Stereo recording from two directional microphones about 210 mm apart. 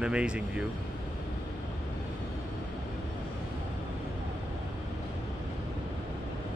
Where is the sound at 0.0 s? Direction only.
5° right (ahead or behind).